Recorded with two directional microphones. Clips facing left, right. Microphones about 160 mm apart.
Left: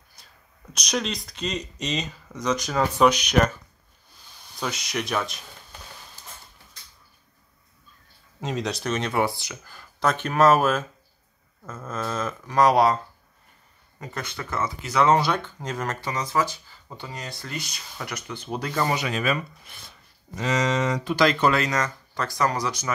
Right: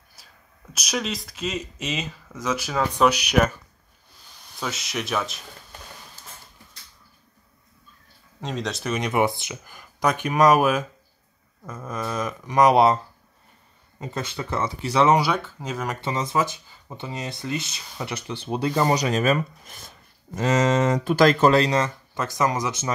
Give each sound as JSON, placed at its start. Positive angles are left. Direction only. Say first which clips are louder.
{"t": 0.2, "sound": "a sound", "louder": "right 1 dB", "side_deg": -5}
{"t": 0.7, "sound": "speech", "louder": "even", "side_deg": -5}
{"t": 4.6, "sound": "speech", "louder": "left 1 dB", "side_deg": 0}
{"t": 8.4, "sound": "speech", "louder": "left 1 dB", "side_deg": 0}
{"t": 15.0, "sound": "speech", "louder": "right 1 dB", "side_deg": -10}
{"t": 16.0, "sound": "speech", "louder": "right 2 dB", "side_deg": -25}
{"t": 18.9, "sound": "speech", "louder": "right 4 dB", "side_deg": -40}